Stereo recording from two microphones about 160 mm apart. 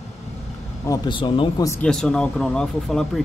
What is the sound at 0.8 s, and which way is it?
Speech, 30° left (ahead or behind).